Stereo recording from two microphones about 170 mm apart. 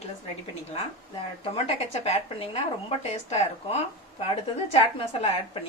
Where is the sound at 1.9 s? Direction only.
40° left (ahead or behind).